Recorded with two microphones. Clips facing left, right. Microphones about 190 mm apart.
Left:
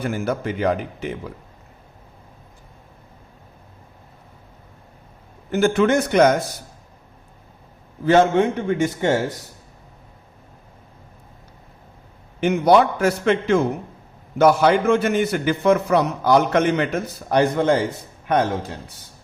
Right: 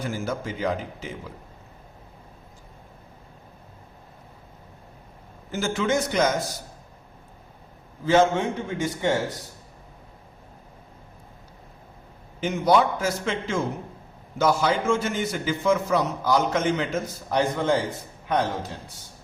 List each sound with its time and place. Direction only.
0.0 s a man's voice: 60° left (ahead or behind)
5.5 s a man's voice: 60° left (ahead or behind)
8.0 s a man's voice: 65° left (ahead or behind)
12.4 s a man's voice: 65° left (ahead or behind)